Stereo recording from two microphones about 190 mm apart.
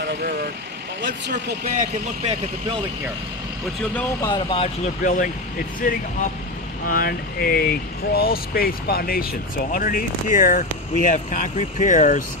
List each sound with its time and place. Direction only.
0.0 s speech: 50° right (ahead or behind)
1.7 s speech: 40° right (ahead or behind)
3.9 s speech: 20° left (ahead or behind)
5.0 s speech: 45° left (ahead or behind)